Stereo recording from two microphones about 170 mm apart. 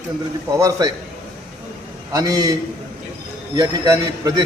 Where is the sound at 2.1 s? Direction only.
20° right (ahead or behind).